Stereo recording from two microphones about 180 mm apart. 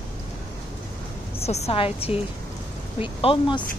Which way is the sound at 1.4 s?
35° left (ahead or behind).